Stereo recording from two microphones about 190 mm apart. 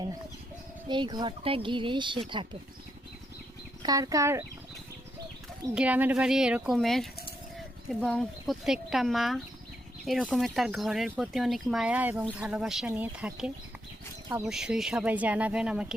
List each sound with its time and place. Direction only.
0.9 s speech: 25° right (ahead or behind)
3.8 s speech: 20° right (ahead or behind)
5.7 s speech: 5° right (ahead or behind)